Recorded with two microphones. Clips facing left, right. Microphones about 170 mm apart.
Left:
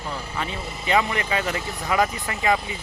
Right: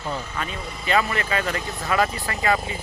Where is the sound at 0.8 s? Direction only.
20° left (ahead or behind).